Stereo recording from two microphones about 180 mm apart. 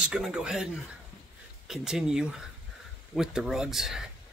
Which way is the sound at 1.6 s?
5° right (ahead or behind).